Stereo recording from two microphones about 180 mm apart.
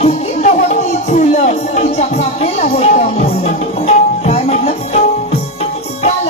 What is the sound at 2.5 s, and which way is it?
Music, 40° left (ahead or behind).